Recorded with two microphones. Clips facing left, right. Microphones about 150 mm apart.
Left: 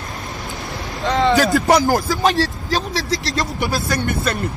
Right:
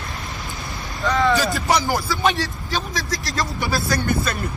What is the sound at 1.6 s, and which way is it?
Speech, 45° left (ahead or behind).